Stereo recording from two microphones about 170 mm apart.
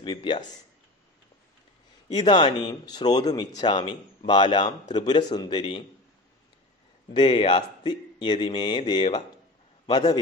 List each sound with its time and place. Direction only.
0.0 s speech: 30° left (ahead or behind)
2.1 s speech: 25° left (ahead or behind)
7.2 s a man's voice: 25° left (ahead or behind)